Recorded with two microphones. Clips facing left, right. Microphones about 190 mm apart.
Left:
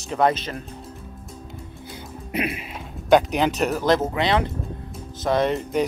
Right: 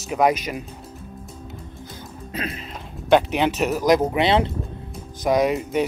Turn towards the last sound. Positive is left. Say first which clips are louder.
# right 1 dB
turn(degrees=-10)  # may be behind; listen again after turning